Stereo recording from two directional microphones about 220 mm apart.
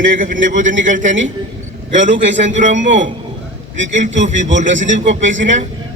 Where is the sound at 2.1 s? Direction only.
35° right (ahead or behind).